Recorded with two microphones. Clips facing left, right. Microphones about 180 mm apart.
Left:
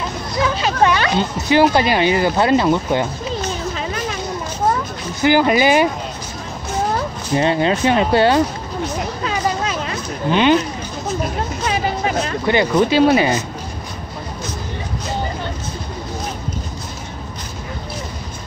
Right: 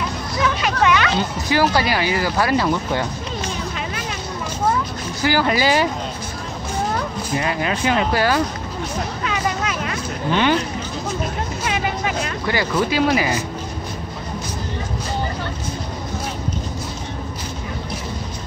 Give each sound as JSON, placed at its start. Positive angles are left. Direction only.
{"t": 0.6, "sound": "a sound", "side_deg": 35}
{"t": 1.5, "sound": "speech", "side_deg": 20}
{"t": 5.2, "sound": "speech", "side_deg": 20}
{"t": 7.3, "sound": "speech", "side_deg": 30}
{"t": 9.2, "sound": "vehicle", "side_deg": 35}
{"t": 10.3, "sound": "speech", "side_deg": 20}
{"t": 11.6, "sound": "speech", "side_deg": 35}